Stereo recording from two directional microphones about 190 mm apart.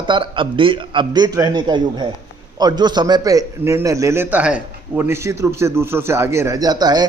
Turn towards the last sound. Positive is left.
turn(degrees=-20)  # may be behind; listen again after turning